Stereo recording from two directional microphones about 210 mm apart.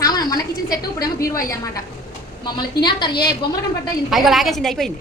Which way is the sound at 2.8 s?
20° left (ahead or behind).